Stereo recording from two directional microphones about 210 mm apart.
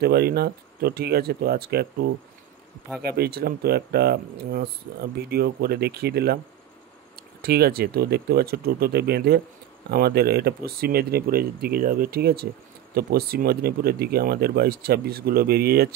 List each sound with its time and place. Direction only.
0.0 s speech: 50° right (ahead or behind)
7.4 s speech: 50° right (ahead or behind)